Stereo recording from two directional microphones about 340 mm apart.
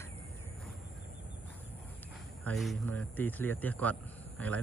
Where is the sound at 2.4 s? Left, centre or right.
Centre.